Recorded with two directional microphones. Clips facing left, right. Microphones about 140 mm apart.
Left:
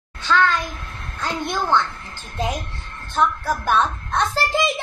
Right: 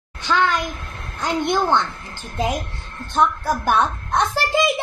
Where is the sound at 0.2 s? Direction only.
15° right (ahead or behind).